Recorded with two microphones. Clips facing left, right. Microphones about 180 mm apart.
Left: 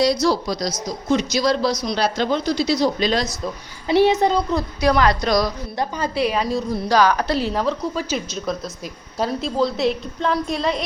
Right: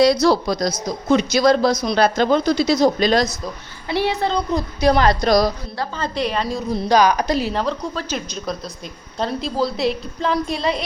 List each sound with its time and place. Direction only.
0.0 s a woman's voice: 60° right (ahead or behind)
3.8 s a child's voice: 15° left (ahead or behind)
4.5 s a woman's voice: 25° right (ahead or behind)
5.2 s a woman's voice: 40° right (ahead or behind)
5.7 s a woman's voice: 20° left (ahead or behind)
6.1 s a woman's voice: 5° left (ahead or behind)
6.8 s a woman's voice: 15° right (ahead or behind)
7.5 s a woman's voice: centre (ahead or behind)